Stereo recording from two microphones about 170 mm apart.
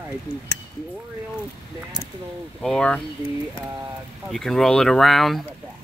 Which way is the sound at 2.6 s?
5° left (ahead or behind).